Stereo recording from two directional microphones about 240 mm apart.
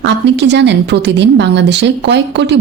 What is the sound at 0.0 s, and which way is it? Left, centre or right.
A woman's voice, right.